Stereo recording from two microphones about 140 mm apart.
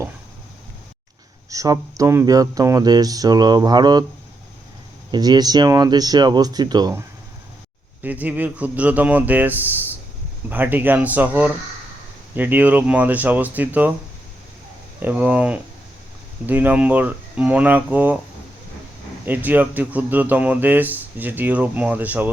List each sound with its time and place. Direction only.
1.5 s speech: 25° right (ahead or behind)
5.1 s speech: 30° right (ahead or behind)
8.0 s speech: 10° right (ahead or behind)
15.0 s speech: 10° right (ahead or behind)
19.2 s speech: 10° right (ahead or behind)